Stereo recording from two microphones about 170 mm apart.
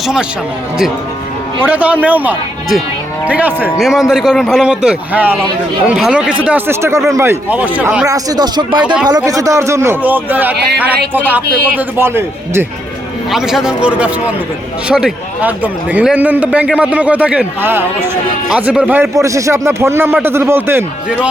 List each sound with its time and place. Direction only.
1.6 s a man's voice: 10° right (ahead or behind)
8.0 s a man's voice: 20° right (ahead or behind)
13.3 s a man's voice: 5° right (ahead or behind)